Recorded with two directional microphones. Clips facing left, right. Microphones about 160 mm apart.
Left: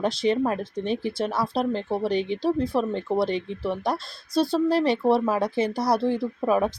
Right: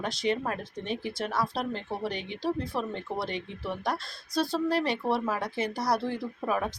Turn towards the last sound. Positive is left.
turn(degrees=30)  # may be behind; listen again after turning